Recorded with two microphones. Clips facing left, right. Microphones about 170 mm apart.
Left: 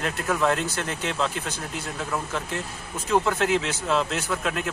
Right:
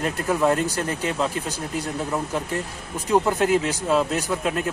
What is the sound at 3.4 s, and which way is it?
Speech, 40° right (ahead or behind).